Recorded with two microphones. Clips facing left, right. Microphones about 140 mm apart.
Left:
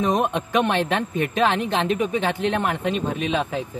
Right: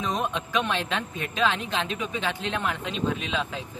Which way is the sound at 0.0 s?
55° left (ahead or behind).